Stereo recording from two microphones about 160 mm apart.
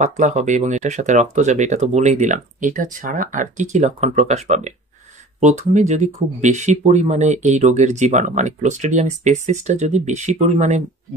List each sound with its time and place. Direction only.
0.0 s speech: 45° right (ahead or behind)